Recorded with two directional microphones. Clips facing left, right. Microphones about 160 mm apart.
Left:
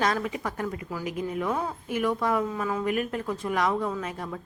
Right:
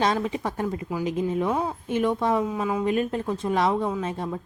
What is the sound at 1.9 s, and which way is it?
A woman's voice, 25° right (ahead or behind).